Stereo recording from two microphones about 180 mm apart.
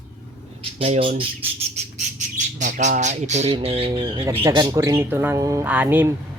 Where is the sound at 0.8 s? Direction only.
30° right (ahead or behind).